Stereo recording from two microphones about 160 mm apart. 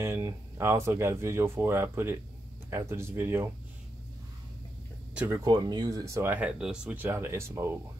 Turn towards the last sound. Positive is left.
turn(degrees=-15)  # may be behind; listen again after turning